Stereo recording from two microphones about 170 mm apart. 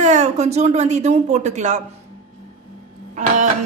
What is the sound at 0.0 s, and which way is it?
Speech, 45° right (ahead or behind).